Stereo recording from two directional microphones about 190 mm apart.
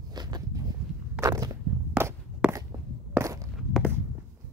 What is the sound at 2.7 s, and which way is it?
Walk, 25° right (ahead or behind).